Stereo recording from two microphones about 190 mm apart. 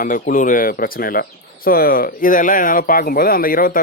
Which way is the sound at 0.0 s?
45° left (ahead or behind).